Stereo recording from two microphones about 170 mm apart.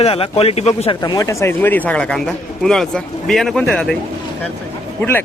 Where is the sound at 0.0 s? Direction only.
35° left (ahead or behind).